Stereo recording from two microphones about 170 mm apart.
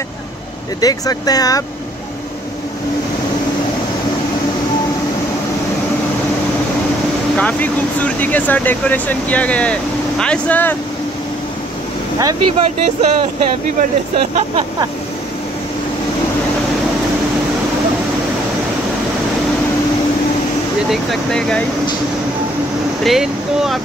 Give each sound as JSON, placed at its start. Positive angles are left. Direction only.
{"t": 0.7, "sound": "speech", "side_deg": 20}
{"t": 7.3, "sound": "speech", "side_deg": 10}
{"t": 12.2, "sound": "speech", "side_deg": -25}
{"t": 14.1, "sound": "speech", "side_deg": -35}
{"t": 20.9, "sound": "speech", "side_deg": 0}
{"t": 23.0, "sound": "speech", "side_deg": 0}